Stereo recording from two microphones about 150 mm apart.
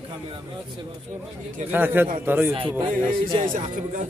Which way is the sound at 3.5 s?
55° right (ahead or behind).